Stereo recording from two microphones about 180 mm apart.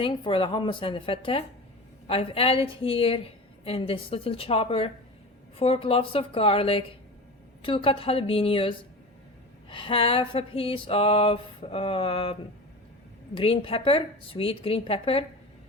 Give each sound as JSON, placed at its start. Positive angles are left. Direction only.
{"t": 0.0, "sound": "a woman's voice", "side_deg": 30}